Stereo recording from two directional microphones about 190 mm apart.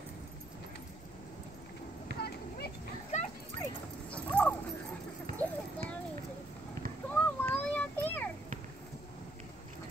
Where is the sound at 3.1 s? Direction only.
35° left (ahead or behind).